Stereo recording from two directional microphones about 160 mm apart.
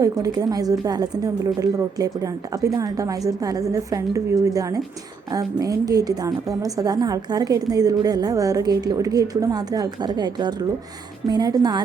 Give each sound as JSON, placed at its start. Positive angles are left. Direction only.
{"t": 0.0, "sound": "a woman's voice", "side_deg": -25}